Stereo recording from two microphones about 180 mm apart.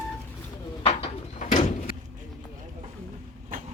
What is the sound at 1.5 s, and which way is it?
Door, 45° left (ahead or behind).